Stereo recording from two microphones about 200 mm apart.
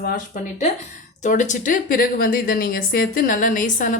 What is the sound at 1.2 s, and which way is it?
A woman's voice, 35° left (ahead or behind).